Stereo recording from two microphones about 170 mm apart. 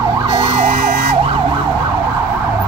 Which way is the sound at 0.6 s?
55° right (ahead or behind).